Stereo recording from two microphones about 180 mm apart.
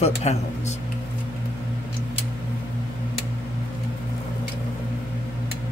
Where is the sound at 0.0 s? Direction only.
35° left (ahead or behind).